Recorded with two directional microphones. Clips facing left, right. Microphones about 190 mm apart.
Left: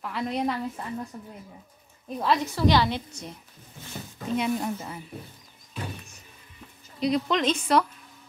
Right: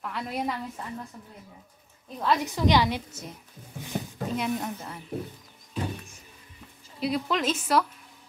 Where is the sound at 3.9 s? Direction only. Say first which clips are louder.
Right 7 dB; 60° right (ahead or behind).